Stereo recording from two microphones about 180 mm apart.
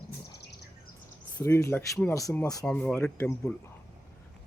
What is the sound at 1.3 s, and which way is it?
Speech, 10° left (ahead or behind).